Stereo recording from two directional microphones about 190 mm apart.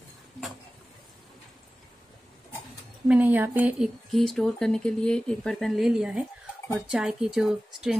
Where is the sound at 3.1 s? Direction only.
10° right (ahead or behind).